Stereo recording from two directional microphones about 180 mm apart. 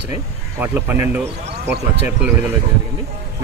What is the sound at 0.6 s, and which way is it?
Speech, 10° right (ahead or behind).